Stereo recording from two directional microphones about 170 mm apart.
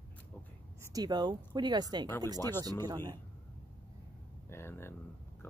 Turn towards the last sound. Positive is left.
turn(degrees=15)  # may be behind; listen again after turning